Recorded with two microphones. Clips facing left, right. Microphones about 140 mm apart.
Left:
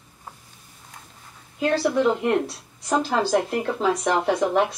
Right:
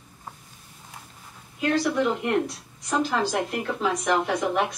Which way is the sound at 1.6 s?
30° left (ahead or behind).